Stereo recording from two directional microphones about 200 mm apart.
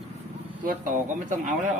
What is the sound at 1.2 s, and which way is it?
Speech, 40° right (ahead or behind).